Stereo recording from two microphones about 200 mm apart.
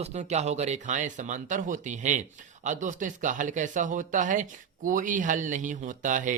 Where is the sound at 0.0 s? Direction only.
35° right (ahead or behind).